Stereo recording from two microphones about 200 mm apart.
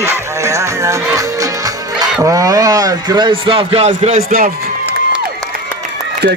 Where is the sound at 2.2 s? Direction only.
15° right (ahead or behind); by 4.2 s 35° right (ahead or behind).